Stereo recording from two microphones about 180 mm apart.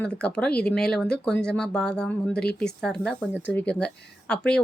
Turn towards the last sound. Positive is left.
turn(degrees=5)  # may be behind; listen again after turning